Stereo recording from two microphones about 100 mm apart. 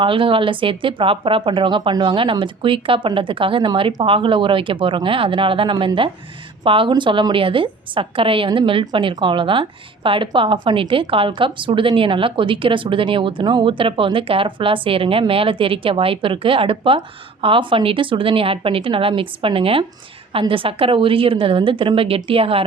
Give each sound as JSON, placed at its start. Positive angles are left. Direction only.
{"t": 0.0, "sound": "a woman's voice", "side_deg": -60}